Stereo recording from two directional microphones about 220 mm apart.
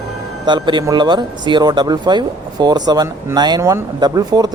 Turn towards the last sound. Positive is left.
turn(degrees=-15)  # may be behind; listen again after turning